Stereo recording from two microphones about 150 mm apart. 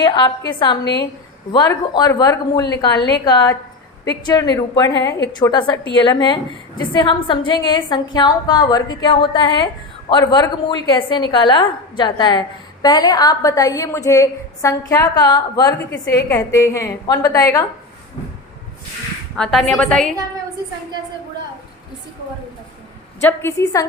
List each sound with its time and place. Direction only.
0.0 s a woman's voice: 30° left (ahead or behind)
19.4 s a woman's voice: centre (ahead or behind)
23.2 s a woman's voice: 15° left (ahead or behind)